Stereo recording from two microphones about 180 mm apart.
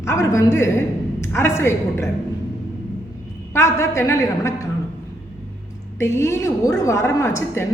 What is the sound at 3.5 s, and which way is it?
A woman's voice, 15° left (ahead or behind).